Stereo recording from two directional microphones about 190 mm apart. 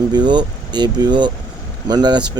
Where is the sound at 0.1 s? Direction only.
25° right (ahead or behind).